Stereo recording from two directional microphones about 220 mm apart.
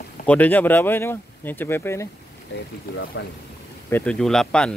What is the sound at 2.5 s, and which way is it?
Speech, 55° left (ahead or behind).